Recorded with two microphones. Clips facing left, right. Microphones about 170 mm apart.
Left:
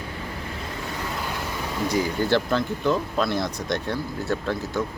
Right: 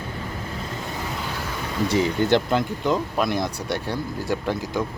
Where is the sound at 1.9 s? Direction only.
20° right (ahead or behind).